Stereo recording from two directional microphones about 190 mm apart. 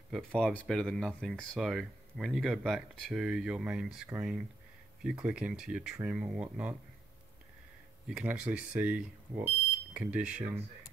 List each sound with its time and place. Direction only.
0.1 s speech: 5° left (ahead or behind)
8.1 s speech: 5° right (ahead or behind)